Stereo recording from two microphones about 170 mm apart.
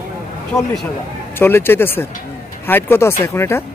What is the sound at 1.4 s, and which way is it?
Speech, 15° left (ahead or behind).